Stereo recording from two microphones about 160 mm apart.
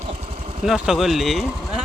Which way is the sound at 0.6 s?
5° right (ahead or behind).